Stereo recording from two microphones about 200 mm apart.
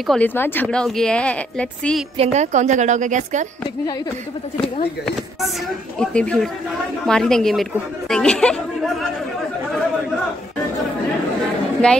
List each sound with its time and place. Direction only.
0.0 s speech: 5° left (ahead or behind)
2.1 s a woman's voice: 35° right (ahead or behind)
5.9 s speech: 5° left (ahead or behind)
11.8 s speech: 5° left (ahead or behind)